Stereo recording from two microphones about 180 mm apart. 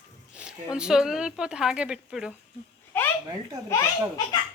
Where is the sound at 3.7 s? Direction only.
20° left (ahead or behind).